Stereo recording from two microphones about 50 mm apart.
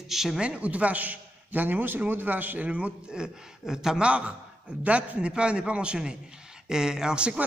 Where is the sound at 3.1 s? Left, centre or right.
Centre.